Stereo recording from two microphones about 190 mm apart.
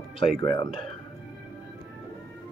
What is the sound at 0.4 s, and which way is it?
Speech, 20° left (ahead or behind).